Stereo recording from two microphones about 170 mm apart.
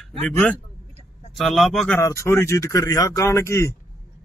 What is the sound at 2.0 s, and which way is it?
Speech, 15° left (ahead or behind).